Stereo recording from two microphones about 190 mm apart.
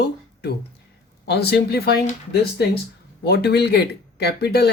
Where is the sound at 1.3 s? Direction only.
60° left (ahead or behind).